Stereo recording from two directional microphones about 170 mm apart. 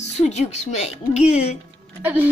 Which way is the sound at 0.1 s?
40° left (ahead or behind).